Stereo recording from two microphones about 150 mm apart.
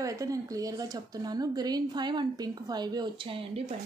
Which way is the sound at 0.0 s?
20° right (ahead or behind).